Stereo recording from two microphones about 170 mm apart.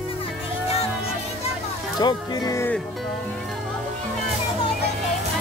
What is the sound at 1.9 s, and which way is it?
Speech, 25° left (ahead or behind).